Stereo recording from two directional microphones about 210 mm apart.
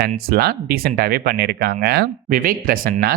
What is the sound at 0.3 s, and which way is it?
Speech, 50° right (ahead or behind).